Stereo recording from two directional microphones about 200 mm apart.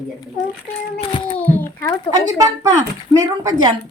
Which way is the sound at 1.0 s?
30° left (ahead or behind).